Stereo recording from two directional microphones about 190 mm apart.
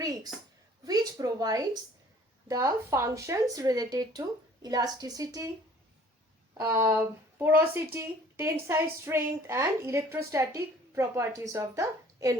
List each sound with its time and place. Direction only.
0.0 s a woman's voice: 20° right (ahead or behind)
6.5 s a woman's voice: 15° right (ahead or behind)